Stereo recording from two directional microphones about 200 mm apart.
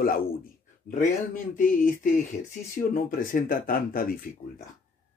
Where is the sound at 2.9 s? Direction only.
45° left (ahead or behind).